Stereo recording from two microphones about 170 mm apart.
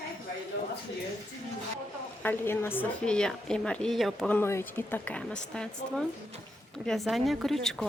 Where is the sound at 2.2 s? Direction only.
10° left (ahead or behind).